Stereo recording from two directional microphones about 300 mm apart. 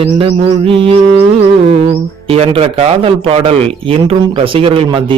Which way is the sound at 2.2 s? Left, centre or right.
Centre.